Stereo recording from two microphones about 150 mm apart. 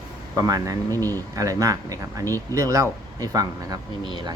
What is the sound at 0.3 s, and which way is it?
Speech, 20° right (ahead or behind).